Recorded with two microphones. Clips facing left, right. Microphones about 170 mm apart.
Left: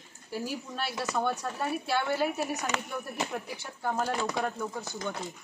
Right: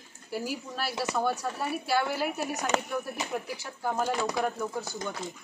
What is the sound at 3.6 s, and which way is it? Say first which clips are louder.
Speech: left 1 dB; 10° right (ahead or behind).